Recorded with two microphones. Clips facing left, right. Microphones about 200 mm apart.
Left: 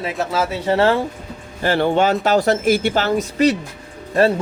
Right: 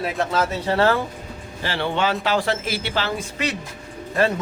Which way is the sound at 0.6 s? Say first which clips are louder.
Left 4 dB; 25° left (ahead or behind).